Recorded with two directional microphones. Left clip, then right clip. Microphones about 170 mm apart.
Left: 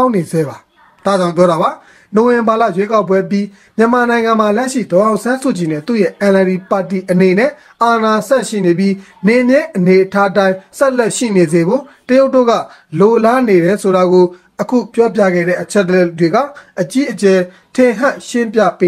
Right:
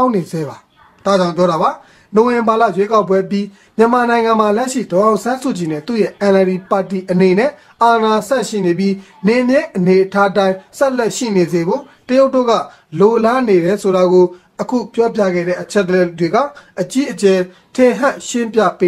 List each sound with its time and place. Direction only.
1.0 s a man's voice: 25° left (ahead or behind)